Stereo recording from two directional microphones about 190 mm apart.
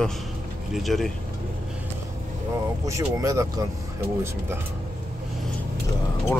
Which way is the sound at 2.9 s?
15° right (ahead or behind).